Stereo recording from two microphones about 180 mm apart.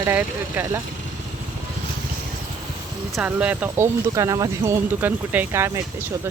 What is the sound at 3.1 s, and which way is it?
Speech, 10° right (ahead or behind).